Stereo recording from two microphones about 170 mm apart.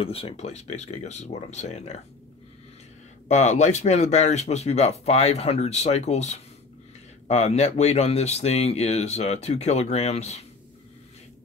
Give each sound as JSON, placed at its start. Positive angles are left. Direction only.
{"t": 0.0, "sound": "speech", "side_deg": 35}
{"t": 3.3, "sound": "speech", "side_deg": 40}